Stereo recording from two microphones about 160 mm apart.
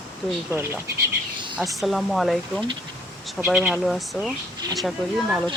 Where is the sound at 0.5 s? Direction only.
15° right (ahead or behind).